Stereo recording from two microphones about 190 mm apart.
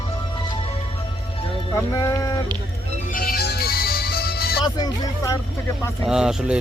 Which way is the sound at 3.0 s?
50° left (ahead or behind).